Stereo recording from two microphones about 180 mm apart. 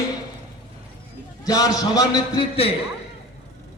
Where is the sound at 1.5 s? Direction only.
20° left (ahead or behind).